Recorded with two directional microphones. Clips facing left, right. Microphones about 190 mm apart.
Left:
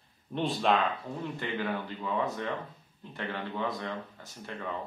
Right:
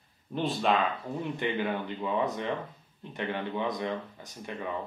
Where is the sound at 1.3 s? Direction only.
20° right (ahead or behind).